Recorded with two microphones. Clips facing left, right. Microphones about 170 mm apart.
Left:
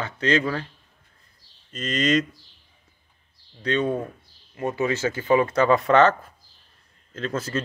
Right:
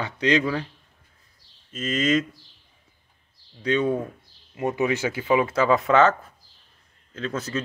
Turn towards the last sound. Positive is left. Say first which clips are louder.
# left 1 dB
turn(degrees=0)  # may be behind; listen again after turning